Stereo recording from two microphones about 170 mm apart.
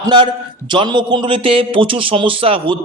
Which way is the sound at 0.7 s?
25° right (ahead or behind).